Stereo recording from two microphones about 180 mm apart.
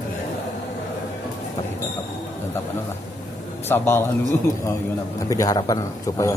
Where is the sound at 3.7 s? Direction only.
10° left (ahead or behind).